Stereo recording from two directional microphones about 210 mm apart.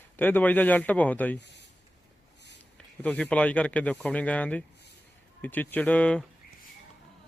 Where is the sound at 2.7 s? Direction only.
5° left (ahead or behind).